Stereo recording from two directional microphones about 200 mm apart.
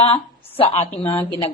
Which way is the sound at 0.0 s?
30° left (ahead or behind).